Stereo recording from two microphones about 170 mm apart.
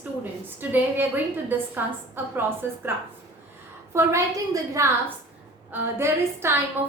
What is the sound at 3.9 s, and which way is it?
A woman's voice, 15° right (ahead or behind).